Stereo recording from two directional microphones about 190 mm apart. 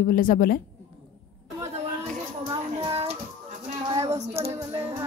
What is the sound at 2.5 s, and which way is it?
Child singing, 25° right (ahead or behind).